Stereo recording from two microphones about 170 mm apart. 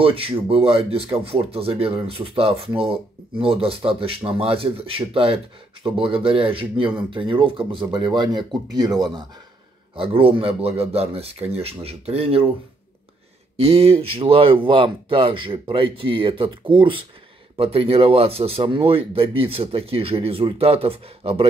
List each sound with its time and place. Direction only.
0.0 s speech: 30° right (ahead or behind)
13.6 s speech: 35° right (ahead or behind)